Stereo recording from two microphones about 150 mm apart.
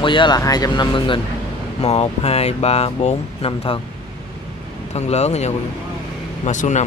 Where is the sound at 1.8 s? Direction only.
45° left (ahead or behind).